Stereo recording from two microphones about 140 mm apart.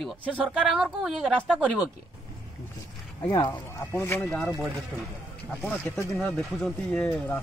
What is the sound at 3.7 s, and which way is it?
Speech, 15° left (ahead or behind).